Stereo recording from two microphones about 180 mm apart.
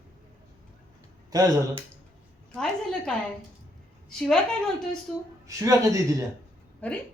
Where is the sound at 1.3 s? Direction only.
20° right (ahead or behind).